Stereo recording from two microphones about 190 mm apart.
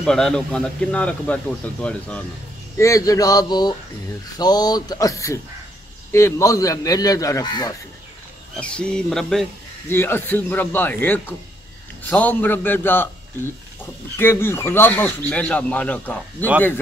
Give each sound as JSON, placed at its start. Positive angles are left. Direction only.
{"t": 0.0, "sound": "a man's voice", "side_deg": 5}
{"t": 2.8, "sound": "speech", "side_deg": 15}
{"t": 8.5, "sound": "a man's voice", "side_deg": 5}
{"t": 14.1, "sound": "speech", "side_deg": 10}